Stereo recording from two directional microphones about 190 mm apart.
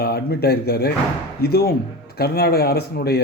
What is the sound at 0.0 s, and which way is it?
A man's voice, 55° left (ahead or behind).